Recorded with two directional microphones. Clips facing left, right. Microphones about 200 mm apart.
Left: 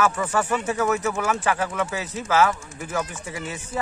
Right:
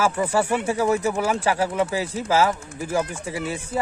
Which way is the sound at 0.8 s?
30° right (ahead or behind).